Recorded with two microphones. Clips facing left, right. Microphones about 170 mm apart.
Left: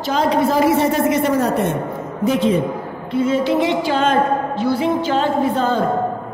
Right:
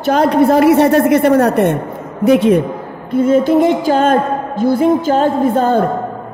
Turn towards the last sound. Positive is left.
turn(degrees=-55)  # may be behind; listen again after turning